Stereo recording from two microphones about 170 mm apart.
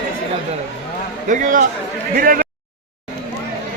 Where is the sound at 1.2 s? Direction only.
45° right (ahead or behind).